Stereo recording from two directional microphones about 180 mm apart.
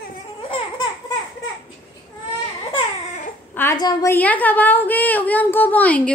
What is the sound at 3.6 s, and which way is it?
A woman's voice, 20° left (ahead or behind).